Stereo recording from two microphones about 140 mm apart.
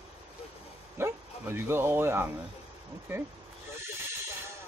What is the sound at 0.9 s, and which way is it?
Speech, 15° right (ahead or behind).